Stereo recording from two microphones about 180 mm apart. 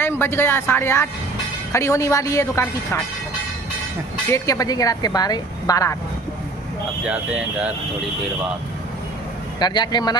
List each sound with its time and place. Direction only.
0.0 s a woman's voice: 10° left (ahead or behind)
4.3 s speech: 20° left (ahead or behind)
7.0 s speech: 5° right (ahead or behind)
9.6 s speech: 25° left (ahead or behind)